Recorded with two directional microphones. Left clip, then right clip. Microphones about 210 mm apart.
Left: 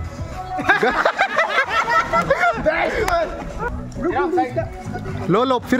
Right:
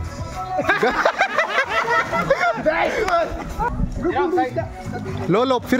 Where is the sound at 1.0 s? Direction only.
Centre (ahead or behind).